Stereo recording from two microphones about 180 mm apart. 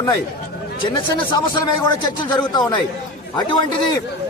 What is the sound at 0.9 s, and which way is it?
Speech, 25° left (ahead or behind).